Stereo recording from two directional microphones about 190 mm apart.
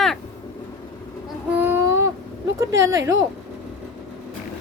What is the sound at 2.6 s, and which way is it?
Speech, 15° right (ahead or behind).